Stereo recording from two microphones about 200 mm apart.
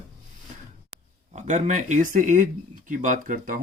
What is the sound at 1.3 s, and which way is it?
Speech, 35° right (ahead or behind).